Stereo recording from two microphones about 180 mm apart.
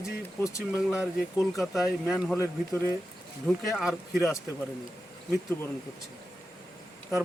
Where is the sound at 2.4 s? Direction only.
15° right (ahead or behind).